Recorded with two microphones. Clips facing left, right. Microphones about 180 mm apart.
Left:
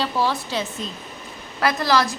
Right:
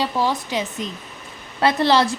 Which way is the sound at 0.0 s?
15° right (ahead or behind).